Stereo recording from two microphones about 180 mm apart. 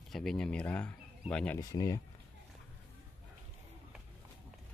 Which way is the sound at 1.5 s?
20° left (ahead or behind).